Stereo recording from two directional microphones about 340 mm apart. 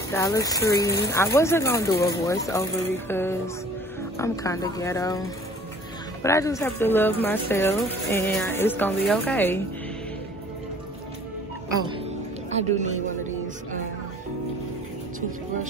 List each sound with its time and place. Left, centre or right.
0.1 s speech: centre
12.4 s a woman's voice: centre